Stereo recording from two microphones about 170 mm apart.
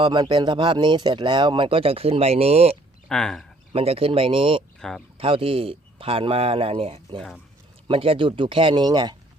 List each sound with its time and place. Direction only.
0.0 s speech: 25° right (ahead or behind)
3.1 s speech: 5° left (ahead or behind)
3.7 s speech: 35° right (ahead or behind)
4.8 s speech: centre (ahead or behind)
5.1 s speech: 30° right (ahead or behind)